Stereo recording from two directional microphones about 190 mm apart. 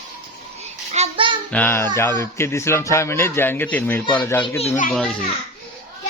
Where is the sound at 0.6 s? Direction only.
35° right (ahead or behind).